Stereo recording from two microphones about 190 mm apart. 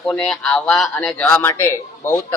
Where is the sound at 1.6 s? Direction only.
15° left (ahead or behind).